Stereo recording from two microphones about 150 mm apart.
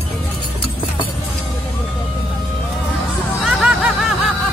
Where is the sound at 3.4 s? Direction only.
5° right (ahead or behind).